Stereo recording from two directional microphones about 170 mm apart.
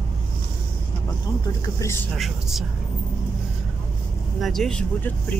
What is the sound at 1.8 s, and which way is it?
Speech, 15° left (ahead or behind).